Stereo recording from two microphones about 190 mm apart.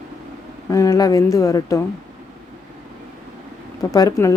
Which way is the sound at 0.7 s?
20° left (ahead or behind).